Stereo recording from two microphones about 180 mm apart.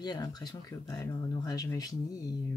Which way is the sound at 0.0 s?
20° left (ahead or behind).